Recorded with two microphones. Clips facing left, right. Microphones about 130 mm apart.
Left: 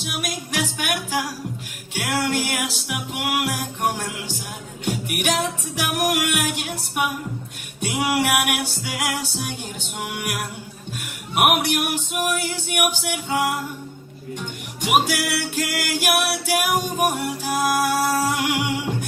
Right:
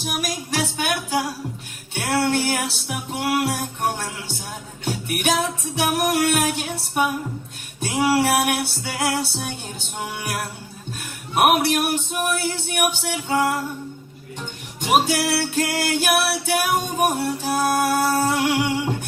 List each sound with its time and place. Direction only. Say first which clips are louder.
0.3 s music: right 1 dB; 30° right (ahead or behind)
11.0 s music: right 2 dB; 35° right (ahead or behind)
14.8 s music: right 2 dB; 30° right (ahead or behind)